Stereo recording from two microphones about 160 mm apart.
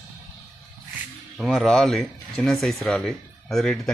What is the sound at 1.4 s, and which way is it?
Speech, centre (ahead or behind).